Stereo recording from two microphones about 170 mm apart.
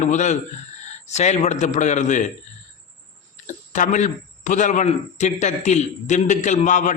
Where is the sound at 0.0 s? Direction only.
45° left (ahead or behind).